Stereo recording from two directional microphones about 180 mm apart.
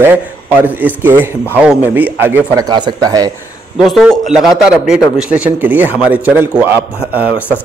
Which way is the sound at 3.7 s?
Centre (ahead or behind).